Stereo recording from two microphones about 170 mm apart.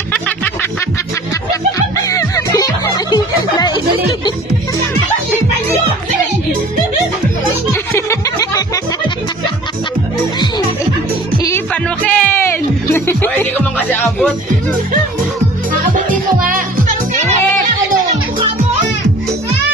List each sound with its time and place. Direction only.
2.0 s music: 20° left (ahead or behind)
7.9 s a sound: 20° left (ahead or behind)
11.4 s music: 10° left (ahead or behind)